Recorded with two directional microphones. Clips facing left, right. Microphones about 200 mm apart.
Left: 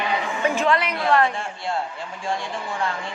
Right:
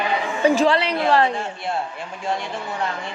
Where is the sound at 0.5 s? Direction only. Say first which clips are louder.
Right 3 dB; 30° right (ahead or behind).